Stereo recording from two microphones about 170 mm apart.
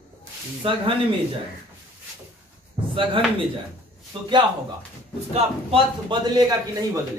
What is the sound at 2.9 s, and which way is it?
A man's voice, 30° right (ahead or behind).